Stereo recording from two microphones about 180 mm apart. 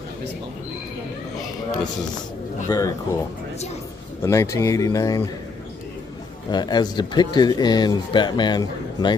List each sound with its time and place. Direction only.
2.7 s speech: 15° left (ahead or behind)
6.5 s speech: 25° left (ahead or behind)